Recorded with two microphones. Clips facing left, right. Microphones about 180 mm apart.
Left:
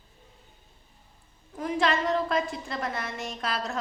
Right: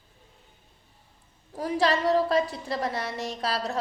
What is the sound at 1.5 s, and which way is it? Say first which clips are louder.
A woman's voice: right 2 dB; 35° right (ahead or behind).